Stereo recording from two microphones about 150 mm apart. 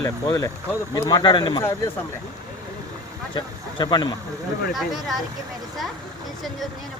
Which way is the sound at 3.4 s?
30° left (ahead or behind).